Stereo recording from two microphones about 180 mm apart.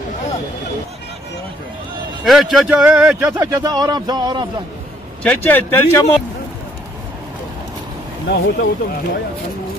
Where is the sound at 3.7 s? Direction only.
25° right (ahead or behind).